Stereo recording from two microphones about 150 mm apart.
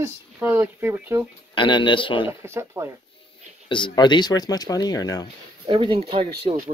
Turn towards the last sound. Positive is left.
turn(degrees=-35)  # may be behind; listen again after turning